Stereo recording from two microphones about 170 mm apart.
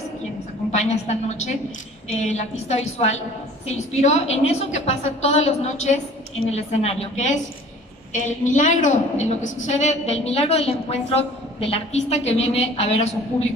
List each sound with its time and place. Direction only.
0.7 s a woman's voice: 40° left (ahead or behind)